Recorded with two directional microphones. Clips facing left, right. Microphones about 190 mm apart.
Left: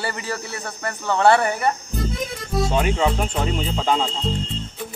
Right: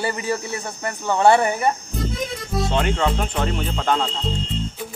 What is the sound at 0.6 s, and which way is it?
Speech, 10° right (ahead or behind).